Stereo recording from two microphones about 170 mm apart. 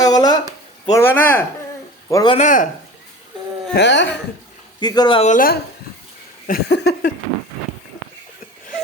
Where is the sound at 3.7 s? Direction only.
90° left.